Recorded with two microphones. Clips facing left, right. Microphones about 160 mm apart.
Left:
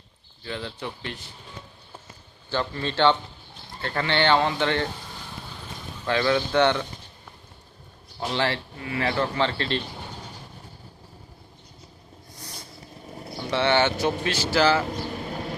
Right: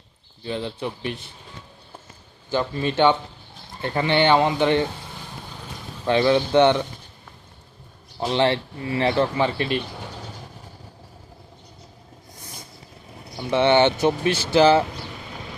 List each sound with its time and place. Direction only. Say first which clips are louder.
0.4 s speech: right 5 dB; 20° right (ahead or behind)
2.5 s speech: right 4 dB; 15° right (ahead or behind)
6.1 s speech: right 5 dB; 20° right (ahead or behind)
8.2 s speech: right 6 dB; 20° right (ahead or behind)
13.5 s speech: right 5 dB; 20° right (ahead or behind)